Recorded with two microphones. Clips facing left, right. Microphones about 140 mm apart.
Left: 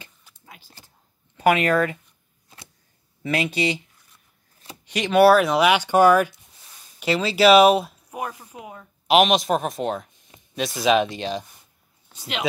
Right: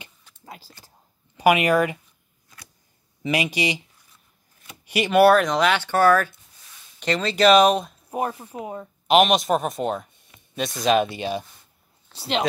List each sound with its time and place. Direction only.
0.5 s a sound: 35° right (ahead or behind)
1.3 s speech: 10° right (ahead or behind)
3.2 s speech: 10° right (ahead or behind)
4.8 s speech: 5° right (ahead or behind)
8.1 s speech: 30° right (ahead or behind)
9.0 s a man's voice: centre (ahead or behind)
12.1 s speech: 35° right (ahead or behind)